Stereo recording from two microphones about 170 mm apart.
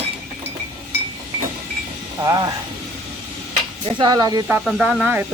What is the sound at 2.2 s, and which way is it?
Speech, 25° right (ahead or behind).